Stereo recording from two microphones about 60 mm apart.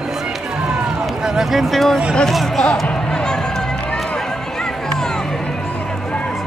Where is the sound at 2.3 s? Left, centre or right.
Centre.